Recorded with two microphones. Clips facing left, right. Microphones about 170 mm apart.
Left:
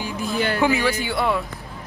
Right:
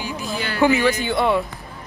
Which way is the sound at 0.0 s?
55° left (ahead or behind).